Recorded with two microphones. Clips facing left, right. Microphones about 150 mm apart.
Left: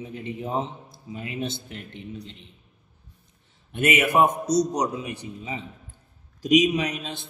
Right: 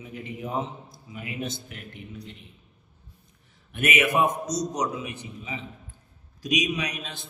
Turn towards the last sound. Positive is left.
turn(degrees=25)  # may be behind; listen again after turning